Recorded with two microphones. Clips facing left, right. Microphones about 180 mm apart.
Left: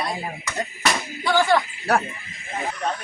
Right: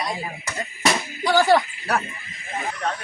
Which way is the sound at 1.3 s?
40° right (ahead or behind).